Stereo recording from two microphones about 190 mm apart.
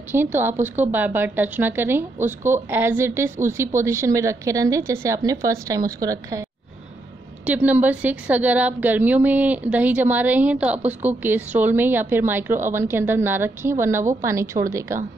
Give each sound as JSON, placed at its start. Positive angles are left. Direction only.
{"t": 0.1, "sound": "a woman's voice", "side_deg": -10}
{"t": 7.4, "sound": "a woman's voice", "side_deg": -10}